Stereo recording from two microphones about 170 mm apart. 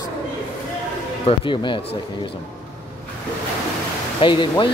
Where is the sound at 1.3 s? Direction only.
35° left (ahead or behind).